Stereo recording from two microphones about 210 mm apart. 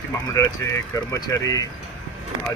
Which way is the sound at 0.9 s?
15° left (ahead or behind).